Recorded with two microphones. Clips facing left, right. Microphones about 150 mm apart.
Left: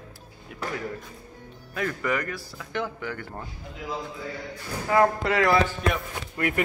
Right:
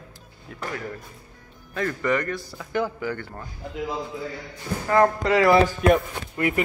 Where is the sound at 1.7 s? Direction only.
5° left (ahead or behind).